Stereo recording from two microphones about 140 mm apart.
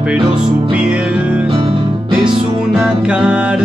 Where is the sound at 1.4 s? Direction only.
40° right (ahead or behind).